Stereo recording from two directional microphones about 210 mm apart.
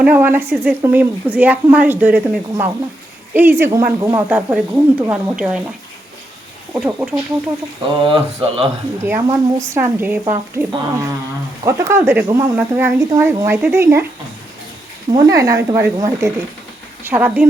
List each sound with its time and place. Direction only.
0.0 s speech: 10° right (ahead or behind)
6.7 s speech: 5° right (ahead or behind)
8.0 s speech: 25° right (ahead or behind)
9.0 s speech: 15° right (ahead or behind)
15.1 s speech: 15° right (ahead or behind)